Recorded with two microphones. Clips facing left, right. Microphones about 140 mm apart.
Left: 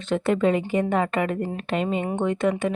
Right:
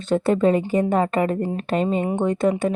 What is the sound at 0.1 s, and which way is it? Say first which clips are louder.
A woman's voice: right 3 dB; 35° right (ahead or behind).